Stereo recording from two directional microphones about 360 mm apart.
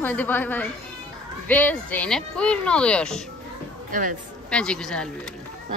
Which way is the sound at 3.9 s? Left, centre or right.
Right.